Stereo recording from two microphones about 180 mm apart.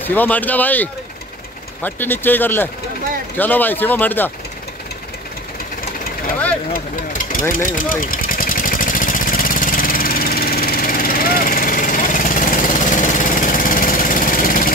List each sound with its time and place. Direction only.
0.0 s speech: 10° left (ahead or behind)
6.7 s speech: 50° left (ahead or behind)
7.5 s vehicle: 50° left (ahead or behind)